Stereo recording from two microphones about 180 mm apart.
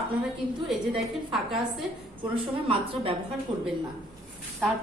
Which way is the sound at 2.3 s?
30° right (ahead or behind).